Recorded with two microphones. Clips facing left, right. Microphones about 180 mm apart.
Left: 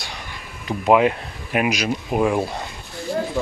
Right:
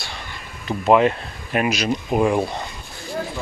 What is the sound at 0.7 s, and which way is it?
Speech, 10° left (ahead or behind).